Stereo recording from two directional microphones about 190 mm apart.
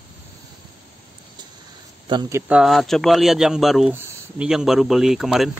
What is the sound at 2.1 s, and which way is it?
Speech, 20° right (ahead or behind).